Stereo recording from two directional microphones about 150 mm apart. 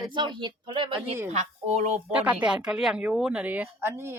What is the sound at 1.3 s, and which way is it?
Speech, 50° right (ahead or behind).